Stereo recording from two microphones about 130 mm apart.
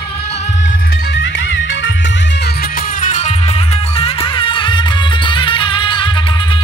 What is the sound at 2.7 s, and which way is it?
Music, 90° left.